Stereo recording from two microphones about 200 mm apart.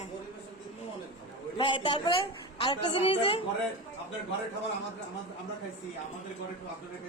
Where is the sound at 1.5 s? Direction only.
25° left (ahead or behind).